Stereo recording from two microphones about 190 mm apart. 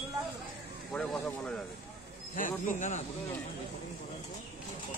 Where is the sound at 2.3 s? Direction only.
45° left (ahead or behind).